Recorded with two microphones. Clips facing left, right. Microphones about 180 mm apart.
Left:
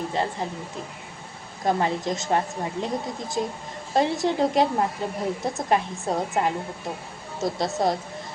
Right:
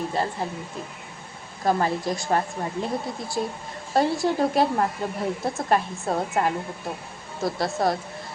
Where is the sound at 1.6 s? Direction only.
20° left (ahead or behind).